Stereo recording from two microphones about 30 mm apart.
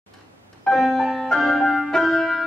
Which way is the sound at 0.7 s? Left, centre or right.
Centre.